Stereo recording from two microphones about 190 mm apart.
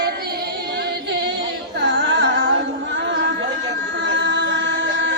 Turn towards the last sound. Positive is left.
turn(degrees=-80)